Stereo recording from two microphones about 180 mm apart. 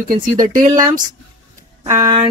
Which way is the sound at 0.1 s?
50° right (ahead or behind).